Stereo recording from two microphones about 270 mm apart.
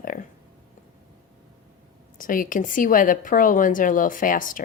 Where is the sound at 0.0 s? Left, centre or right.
Left.